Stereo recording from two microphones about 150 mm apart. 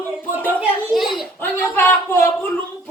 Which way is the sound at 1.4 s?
15° left (ahead or behind).